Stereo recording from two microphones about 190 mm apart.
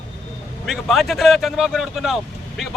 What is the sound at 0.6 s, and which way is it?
Speech, centre (ahead or behind).